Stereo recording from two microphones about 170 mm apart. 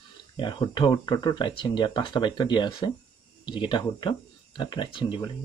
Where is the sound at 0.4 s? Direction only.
30° left (ahead or behind).